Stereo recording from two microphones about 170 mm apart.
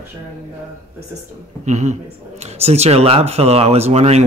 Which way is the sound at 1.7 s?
45° right (ahead or behind).